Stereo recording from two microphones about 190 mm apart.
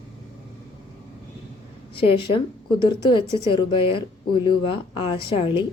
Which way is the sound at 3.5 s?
25° left (ahead or behind).